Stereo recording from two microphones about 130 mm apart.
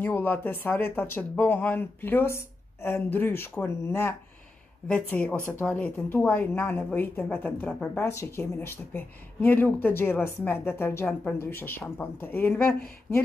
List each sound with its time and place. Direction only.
0.0 s speech: 15° left (ahead or behind)